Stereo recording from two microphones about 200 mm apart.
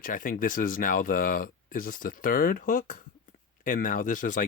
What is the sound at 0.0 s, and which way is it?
Speech, 45° left (ahead or behind).